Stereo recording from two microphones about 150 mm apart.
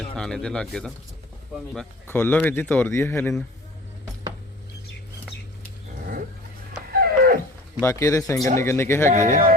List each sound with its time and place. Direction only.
0.2 s speech: 5° left (ahead or behind)
2.1 s speech: 10° left (ahead or behind)
6.9 s livestock: 90° right
7.8 s speech: 20° left (ahead or behind)
9.0 s speech: 55° right (ahead or behind)